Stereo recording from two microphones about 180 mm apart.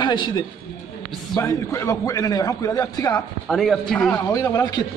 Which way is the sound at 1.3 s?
15° left (ahead or behind).